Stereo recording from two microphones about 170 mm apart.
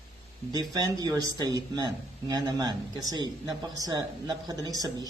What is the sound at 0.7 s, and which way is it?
Speech, 20° right (ahead or behind).